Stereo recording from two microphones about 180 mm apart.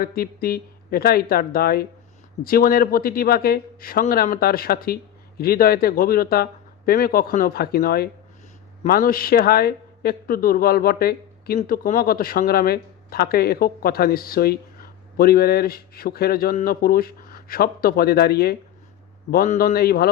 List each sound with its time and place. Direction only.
0.0 s a man's voice: 55° left (ahead or behind)